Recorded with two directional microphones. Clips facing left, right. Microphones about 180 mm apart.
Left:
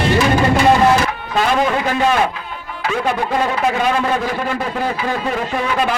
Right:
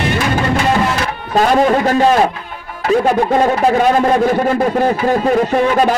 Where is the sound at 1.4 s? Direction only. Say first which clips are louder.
Right 5 dB; 40° right (ahead or behind).